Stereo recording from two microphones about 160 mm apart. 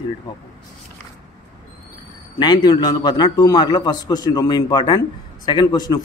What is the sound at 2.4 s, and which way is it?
A man's voice, 25° left (ahead or behind).